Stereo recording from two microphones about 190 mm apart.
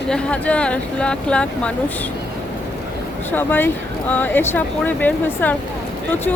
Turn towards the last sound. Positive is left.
turn(degrees=10)  # may be behind; listen again after turning